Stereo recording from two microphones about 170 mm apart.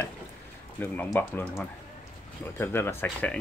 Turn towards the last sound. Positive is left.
turn(degrees=10)  # may be behind; listen again after turning